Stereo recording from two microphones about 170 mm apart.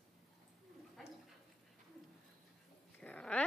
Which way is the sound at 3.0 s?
5° left (ahead or behind).